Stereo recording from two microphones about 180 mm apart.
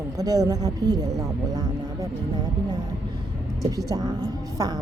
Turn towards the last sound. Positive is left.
turn(degrees=-20)  # may be behind; listen again after turning